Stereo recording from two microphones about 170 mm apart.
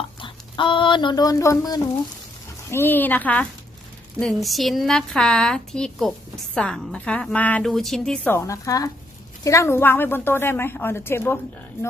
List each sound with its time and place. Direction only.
0.2 s a woman's voice: 30° left (ahead or behind); by 11.3 s 15° left (ahead or behind)